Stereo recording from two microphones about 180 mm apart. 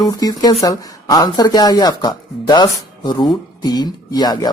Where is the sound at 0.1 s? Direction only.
20° left (ahead or behind).